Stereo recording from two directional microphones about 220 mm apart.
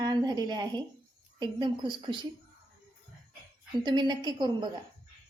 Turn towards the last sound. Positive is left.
turn(degrees=-20)  # may be behind; listen again after turning